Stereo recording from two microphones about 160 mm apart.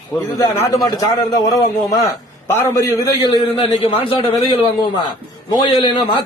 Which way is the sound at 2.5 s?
15° left (ahead or behind).